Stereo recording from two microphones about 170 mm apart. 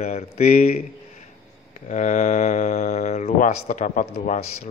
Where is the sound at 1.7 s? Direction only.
45° left (ahead or behind).